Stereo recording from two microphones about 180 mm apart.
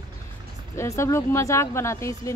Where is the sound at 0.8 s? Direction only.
15° left (ahead or behind).